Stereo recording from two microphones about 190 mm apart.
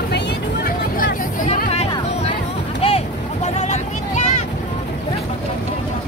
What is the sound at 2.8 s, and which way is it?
Vehicle, 30° left (ahead or behind).